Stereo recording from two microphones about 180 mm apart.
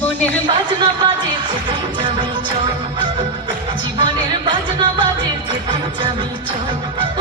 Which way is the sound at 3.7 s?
25° right (ahead or behind).